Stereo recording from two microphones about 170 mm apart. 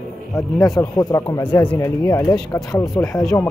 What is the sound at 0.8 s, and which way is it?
Speech, 20° left (ahead or behind).